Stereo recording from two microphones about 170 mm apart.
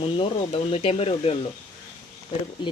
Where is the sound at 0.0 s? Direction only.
35° left (ahead or behind).